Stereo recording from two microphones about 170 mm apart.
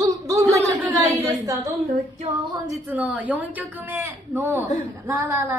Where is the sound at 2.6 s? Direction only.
20° right (ahead or behind).